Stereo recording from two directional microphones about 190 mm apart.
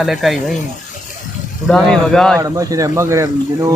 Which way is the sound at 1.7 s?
5° left (ahead or behind).